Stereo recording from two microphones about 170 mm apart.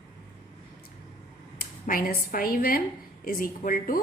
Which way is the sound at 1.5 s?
60° left (ahead or behind).